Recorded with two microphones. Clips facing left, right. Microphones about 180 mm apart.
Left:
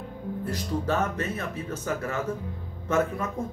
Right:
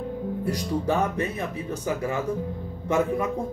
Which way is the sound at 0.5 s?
15° right (ahead or behind).